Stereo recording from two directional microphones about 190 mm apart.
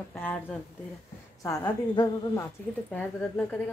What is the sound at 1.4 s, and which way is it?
A woman's voice, 20° left (ahead or behind).